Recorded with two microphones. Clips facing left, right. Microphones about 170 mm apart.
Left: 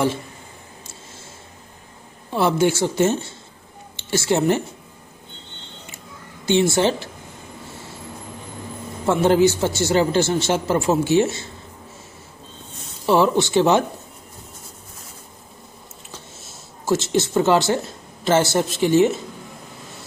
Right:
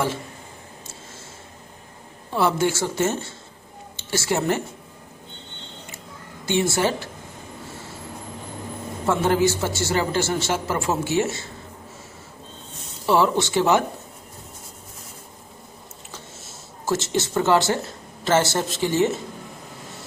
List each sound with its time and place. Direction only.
2.3 s speech: 20° left (ahead or behind)
6.4 s speech: 20° left (ahead or behind)
9.0 s speech: 20° left (ahead or behind)
13.0 s speech: 15° left (ahead or behind)
16.8 s speech: 15° left (ahead or behind)